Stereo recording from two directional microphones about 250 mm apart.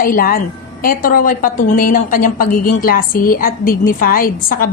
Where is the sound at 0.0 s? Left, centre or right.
Left.